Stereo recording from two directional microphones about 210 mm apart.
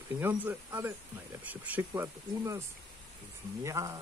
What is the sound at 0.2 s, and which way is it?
Speech, 10° right (ahead or behind).